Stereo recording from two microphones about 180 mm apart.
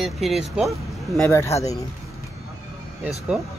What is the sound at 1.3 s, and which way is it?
Speech, 15° left (ahead or behind).